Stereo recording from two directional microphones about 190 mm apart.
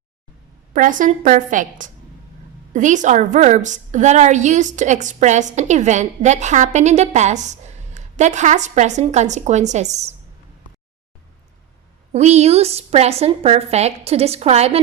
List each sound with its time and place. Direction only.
0.7 s a woman's voice: 45° right (ahead or behind)
12.1 s a woman's voice: 35° right (ahead or behind)